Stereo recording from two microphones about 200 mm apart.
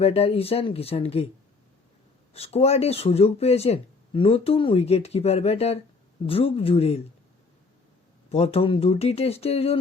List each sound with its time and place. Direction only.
0.0 s speech: 30° left (ahead or behind)
2.3 s speech: 30° left (ahead or behind)
8.3 s speech: 30° left (ahead or behind)